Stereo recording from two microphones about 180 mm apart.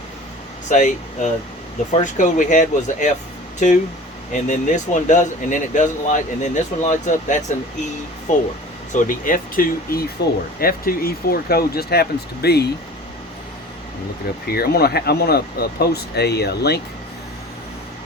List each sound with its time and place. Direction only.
0.7 s speech: 45° left (ahead or behind)
4.4 s speech: 45° left (ahead or behind)
10.2 s speech: 65° left (ahead or behind)
14.4 s speech: 60° left (ahead or behind)